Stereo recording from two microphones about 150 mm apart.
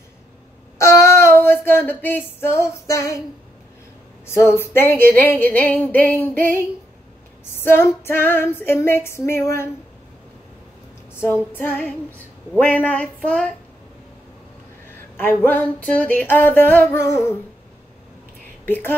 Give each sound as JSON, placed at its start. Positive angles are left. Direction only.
{"t": 0.7, "sound": "a sound", "side_deg": 20}
{"t": 4.3, "sound": "female singing", "side_deg": 15}
{"t": 7.6, "sound": "female singing", "side_deg": 15}
{"t": 11.1, "sound": "female singing", "side_deg": 10}
{"t": 15.1, "sound": "female singing", "side_deg": 10}
{"t": 18.7, "sound": "female singing", "side_deg": 15}